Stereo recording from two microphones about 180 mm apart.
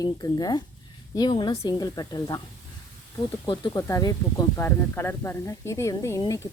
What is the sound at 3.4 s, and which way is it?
A woman's voice, 20° left (ahead or behind).